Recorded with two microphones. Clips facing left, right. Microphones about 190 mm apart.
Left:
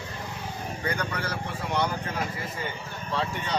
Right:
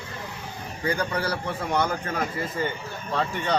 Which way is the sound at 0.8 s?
30° right (ahead or behind).